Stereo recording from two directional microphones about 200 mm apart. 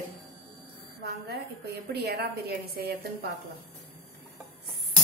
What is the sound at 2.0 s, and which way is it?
Speech, 55° right (ahead or behind).